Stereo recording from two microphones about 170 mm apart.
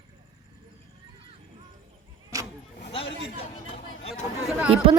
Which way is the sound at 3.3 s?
35° left (ahead or behind).